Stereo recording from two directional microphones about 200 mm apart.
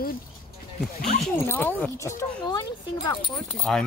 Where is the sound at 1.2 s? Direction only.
10° left (ahead or behind).